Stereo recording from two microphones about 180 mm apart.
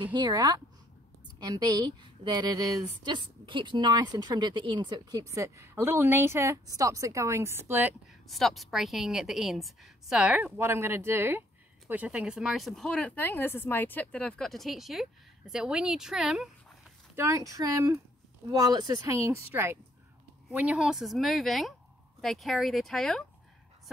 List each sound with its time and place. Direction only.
0.0 s a woman's voice: 25° right (ahead or behind)
8.3 s speech: centre (ahead or behind)
17.1 s a woman's voice: 15° right (ahead or behind); by 23.2 s 5° left (ahead or behind)